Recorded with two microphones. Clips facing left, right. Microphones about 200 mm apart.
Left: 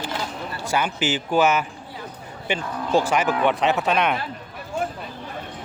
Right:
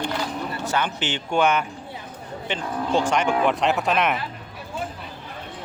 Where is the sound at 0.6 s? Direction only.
10° left (ahead or behind).